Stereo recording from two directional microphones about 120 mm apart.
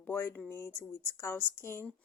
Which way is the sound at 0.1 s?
20° left (ahead or behind).